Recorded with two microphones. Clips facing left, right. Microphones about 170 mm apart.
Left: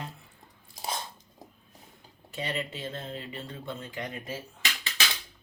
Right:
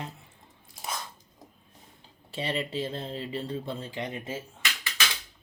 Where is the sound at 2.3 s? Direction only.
30° right (ahead or behind).